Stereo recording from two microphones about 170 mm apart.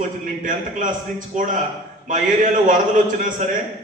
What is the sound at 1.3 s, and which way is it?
A man's voice, 50° right (ahead or behind).